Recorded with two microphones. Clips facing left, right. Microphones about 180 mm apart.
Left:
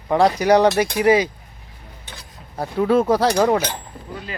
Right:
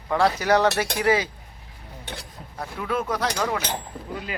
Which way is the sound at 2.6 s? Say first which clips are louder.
Left 10 dB; 30° left (ahead or behind).